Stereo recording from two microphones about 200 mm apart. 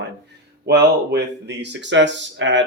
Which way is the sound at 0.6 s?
55° right (ahead or behind).